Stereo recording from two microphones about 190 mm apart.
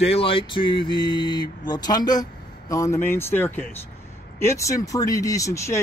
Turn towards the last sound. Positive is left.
turn(degrees=15)  # may be behind; listen again after turning